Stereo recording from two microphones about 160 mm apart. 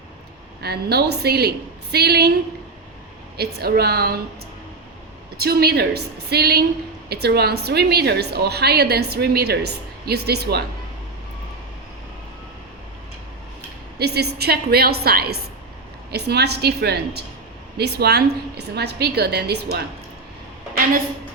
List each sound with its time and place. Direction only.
0.6 s a woman's voice: 85° right
3.3 s a woman's voice: 75° right (ahead or behind)
5.4 s a woman's voice: 80° right
14.0 s a woman's voice: 90° right